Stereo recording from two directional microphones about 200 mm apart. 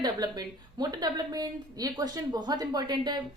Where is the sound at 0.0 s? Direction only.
20° right (ahead or behind).